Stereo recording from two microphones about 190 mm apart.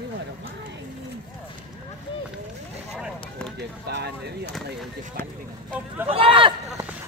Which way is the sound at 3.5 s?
60° right (ahead or behind).